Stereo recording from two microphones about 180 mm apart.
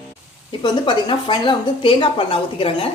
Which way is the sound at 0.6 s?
25° left (ahead or behind).